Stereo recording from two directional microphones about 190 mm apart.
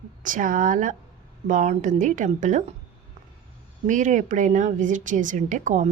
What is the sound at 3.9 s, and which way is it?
A woman's voice, 40° right (ahead or behind).